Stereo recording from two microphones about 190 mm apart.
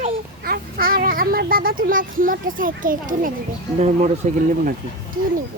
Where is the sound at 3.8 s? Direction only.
35° right (ahead or behind).